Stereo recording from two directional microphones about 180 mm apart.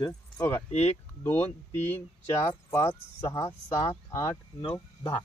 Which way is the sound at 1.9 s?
15° left (ahead or behind).